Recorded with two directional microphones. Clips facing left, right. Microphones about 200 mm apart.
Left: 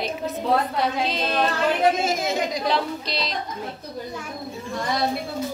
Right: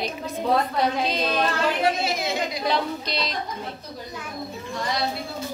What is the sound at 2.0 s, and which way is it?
Speech, 45° left (ahead or behind).